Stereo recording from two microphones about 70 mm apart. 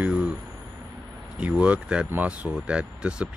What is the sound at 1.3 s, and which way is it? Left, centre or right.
Speech, centre.